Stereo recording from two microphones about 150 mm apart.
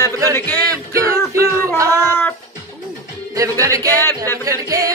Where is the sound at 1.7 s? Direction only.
20° right (ahead or behind).